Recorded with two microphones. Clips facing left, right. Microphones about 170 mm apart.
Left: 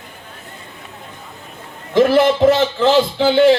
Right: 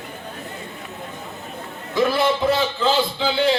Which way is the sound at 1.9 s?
90° left.